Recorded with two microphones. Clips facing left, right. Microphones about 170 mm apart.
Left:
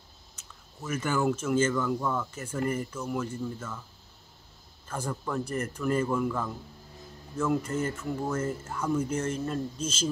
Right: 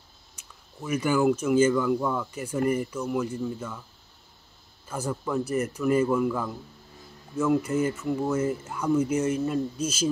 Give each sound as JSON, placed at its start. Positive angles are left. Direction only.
{"t": 0.4, "sound": "speech", "side_deg": -10}
{"t": 4.8, "sound": "speech", "side_deg": -5}